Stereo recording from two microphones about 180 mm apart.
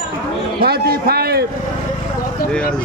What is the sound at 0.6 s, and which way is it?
Speech, 60° right (ahead or behind).